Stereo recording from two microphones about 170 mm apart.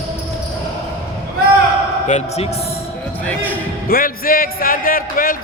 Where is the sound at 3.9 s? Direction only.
60° left (ahead or behind).